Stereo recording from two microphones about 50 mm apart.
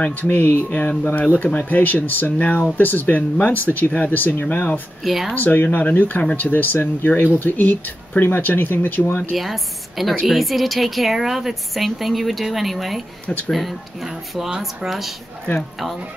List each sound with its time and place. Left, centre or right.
0.3 s speech: left
5.0 s a woman's voice: centre
5.3 s speech: left
9.3 s a woman's voice: centre